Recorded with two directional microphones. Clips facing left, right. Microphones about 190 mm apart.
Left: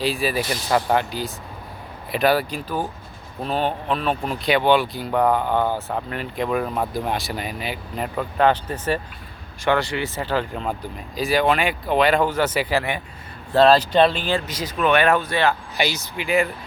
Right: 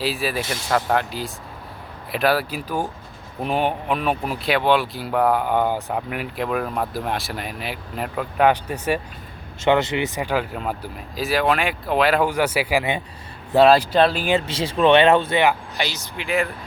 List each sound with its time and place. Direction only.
0.0 s speech: centre (ahead or behind)
9.6 s speech: 20° right (ahead or behind)
14.3 s speech: 25° right (ahead or behind)
15.8 s speech: 10° left (ahead or behind)